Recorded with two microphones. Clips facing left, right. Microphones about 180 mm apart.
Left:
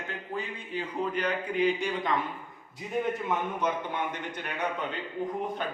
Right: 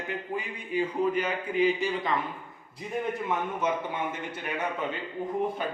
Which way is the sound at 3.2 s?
5° right (ahead or behind).